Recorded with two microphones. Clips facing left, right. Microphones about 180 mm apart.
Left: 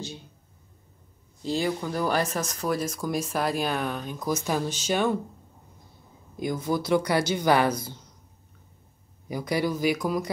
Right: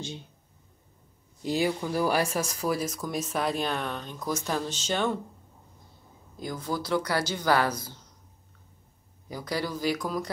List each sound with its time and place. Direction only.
1.4 s speech: 10° right (ahead or behind); by 5.2 s 10° left (ahead or behind)
6.4 s speech: 15° left (ahead or behind)
9.3 s speech: 15° left (ahead or behind)